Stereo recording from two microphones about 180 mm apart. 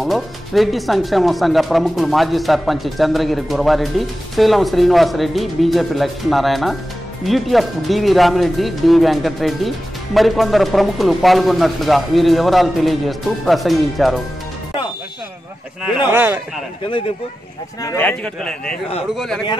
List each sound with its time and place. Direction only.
0.0 s speech: centre (ahead or behind)
16.1 s a man's voice: 15° right (ahead or behind)
17.8 s a man's voice: 10° left (ahead or behind)